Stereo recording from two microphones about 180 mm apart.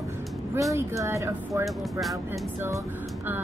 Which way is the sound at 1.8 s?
Centre (ahead or behind).